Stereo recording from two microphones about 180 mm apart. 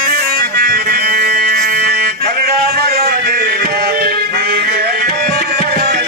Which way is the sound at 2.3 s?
60° right (ahead or behind).